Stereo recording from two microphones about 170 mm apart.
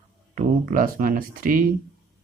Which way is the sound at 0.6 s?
55° right (ahead or behind).